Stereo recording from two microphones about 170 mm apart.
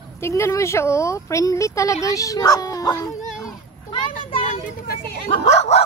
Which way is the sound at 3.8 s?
30° left (ahead or behind).